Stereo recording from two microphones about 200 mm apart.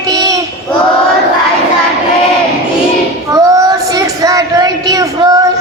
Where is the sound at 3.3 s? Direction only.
15° right (ahead or behind).